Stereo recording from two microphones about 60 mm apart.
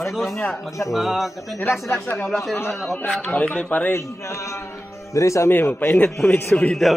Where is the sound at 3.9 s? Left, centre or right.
Left.